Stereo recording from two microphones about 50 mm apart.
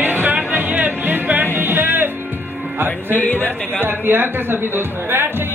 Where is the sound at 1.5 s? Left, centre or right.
Right.